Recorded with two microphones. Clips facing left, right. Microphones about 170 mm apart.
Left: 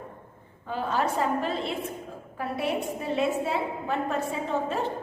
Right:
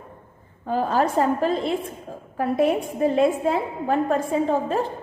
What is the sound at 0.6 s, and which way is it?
A woman's voice, 45° right (ahead or behind).